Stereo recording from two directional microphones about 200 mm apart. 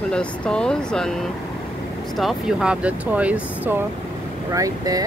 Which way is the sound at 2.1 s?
Centre (ahead or behind).